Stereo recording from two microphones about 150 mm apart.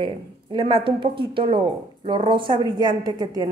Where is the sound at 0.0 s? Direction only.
35° right (ahead or behind).